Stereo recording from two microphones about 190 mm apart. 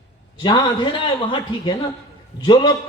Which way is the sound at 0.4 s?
25° left (ahead or behind).